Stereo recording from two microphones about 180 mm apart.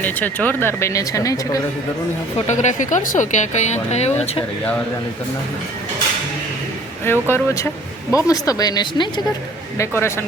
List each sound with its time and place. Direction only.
0.0 s speech: 10° left (ahead or behind)
2.5 s speech: 40° left (ahead or behind)
7.0 s speech: 10° left (ahead or behind)